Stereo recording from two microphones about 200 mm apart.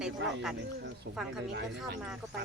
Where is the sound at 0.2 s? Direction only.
60° right (ahead or behind).